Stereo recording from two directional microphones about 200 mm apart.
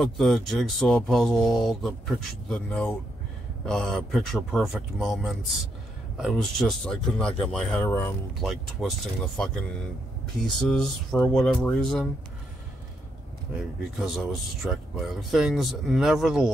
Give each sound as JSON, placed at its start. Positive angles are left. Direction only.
{"t": 0.0, "sound": "speech", "side_deg": 0}
{"t": 14.0, "sound": "speech", "side_deg": 0}